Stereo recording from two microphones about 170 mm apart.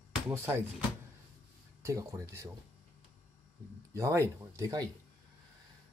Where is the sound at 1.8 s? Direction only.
20° right (ahead or behind).